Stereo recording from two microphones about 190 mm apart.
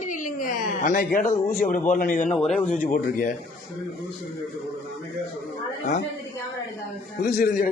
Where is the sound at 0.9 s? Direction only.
50° left (ahead or behind).